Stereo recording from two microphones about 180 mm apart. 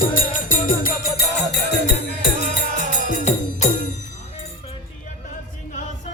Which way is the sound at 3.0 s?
45° left (ahead or behind).